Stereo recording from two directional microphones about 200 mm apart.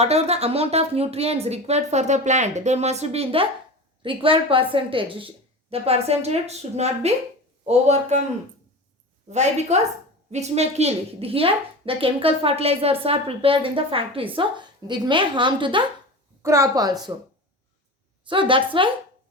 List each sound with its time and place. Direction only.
0.0 s a woman's voice: 30° right (ahead or behind)
9.3 s a woman's voice: 35° right (ahead or behind); by 17.1 s 20° right (ahead or behind)
18.3 s a woman's voice: 25° right (ahead or behind)